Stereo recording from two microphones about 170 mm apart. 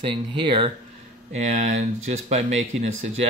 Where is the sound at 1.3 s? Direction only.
40° right (ahead or behind).